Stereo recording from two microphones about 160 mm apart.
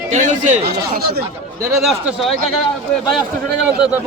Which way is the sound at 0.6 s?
75° right (ahead or behind).